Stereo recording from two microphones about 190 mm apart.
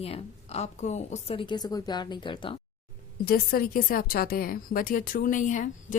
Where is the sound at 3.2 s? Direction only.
55° left (ahead or behind).